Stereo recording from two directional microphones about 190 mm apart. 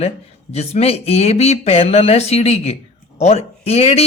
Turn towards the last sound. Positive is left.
turn(degrees=35)  # may be behind; listen again after turning